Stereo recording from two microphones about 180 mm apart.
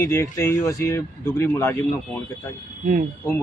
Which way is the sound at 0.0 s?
15° left (ahead or behind).